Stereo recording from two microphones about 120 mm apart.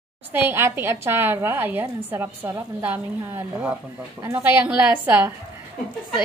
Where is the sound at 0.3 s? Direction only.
15° right (ahead or behind).